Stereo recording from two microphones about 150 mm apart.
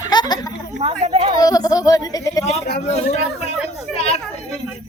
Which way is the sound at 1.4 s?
25° left (ahead or behind).